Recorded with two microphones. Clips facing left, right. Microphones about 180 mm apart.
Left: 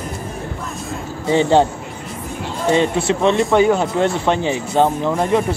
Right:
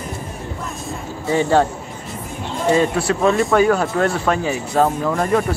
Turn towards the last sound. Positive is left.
turn(degrees=20)  # may be behind; listen again after turning